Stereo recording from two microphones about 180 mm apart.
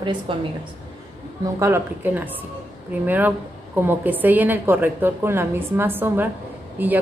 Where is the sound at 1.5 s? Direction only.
15° right (ahead or behind).